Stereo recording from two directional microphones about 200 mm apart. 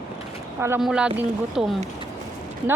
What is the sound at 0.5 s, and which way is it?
A woman's voice, 10° right (ahead or behind).